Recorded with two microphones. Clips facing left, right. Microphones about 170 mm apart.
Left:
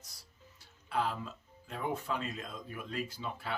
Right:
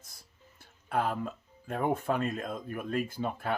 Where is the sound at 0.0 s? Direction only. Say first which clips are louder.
Right 1 dB; 50° right (ahead or behind).